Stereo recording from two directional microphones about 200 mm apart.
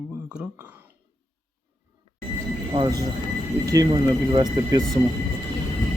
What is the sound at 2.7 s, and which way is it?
Speech, 25° right (ahead or behind).